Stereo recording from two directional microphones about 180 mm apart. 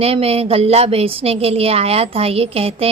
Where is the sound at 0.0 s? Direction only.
35° right (ahead or behind).